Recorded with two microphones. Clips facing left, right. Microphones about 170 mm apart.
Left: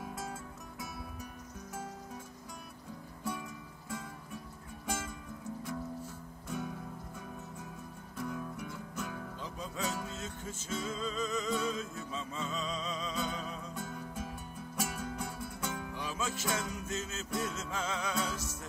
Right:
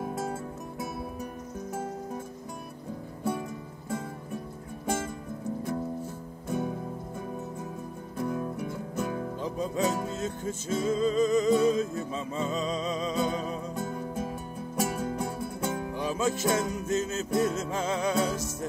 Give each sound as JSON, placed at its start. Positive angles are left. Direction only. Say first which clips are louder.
{"t": 4.8, "sound": "music", "louder": "right 8 dB", "side_deg": -50}
{"t": 6.5, "sound": "music", "louder": "right 8 dB", "side_deg": -35}
{"t": 8.2, "sound": "music", "louder": "right 8 dB", "side_deg": -40}